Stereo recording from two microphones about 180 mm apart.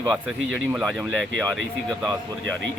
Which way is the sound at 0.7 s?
Centre (ahead or behind).